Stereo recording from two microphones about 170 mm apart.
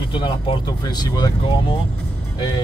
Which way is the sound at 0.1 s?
30° left (ahead or behind).